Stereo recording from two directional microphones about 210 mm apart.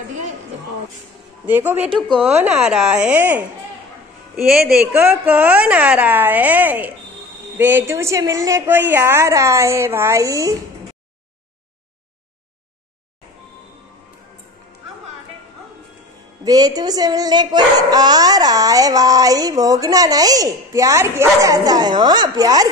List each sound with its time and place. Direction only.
1.4 s speech: 10° right (ahead or behind)
2.0 s speech: 5° left (ahead or behind); by 10.5 s 15° right (ahead or behind)
16.4 s speech: 20° right (ahead or behind)